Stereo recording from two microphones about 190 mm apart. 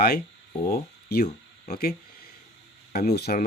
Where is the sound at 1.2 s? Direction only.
35° left (ahead or behind).